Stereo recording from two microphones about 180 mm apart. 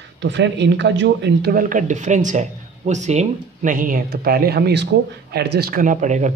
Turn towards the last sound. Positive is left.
turn(degrees=-40)  # may be behind; listen again after turning